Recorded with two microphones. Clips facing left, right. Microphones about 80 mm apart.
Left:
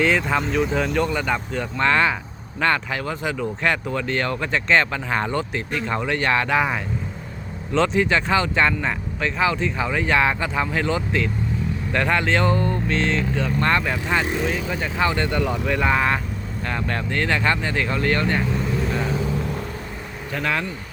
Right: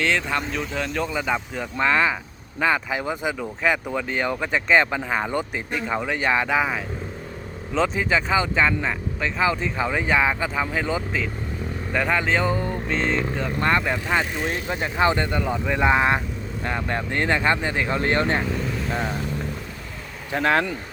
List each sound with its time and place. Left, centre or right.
0.0 s speech: centre; by 18.4 s right
20.3 s speech: right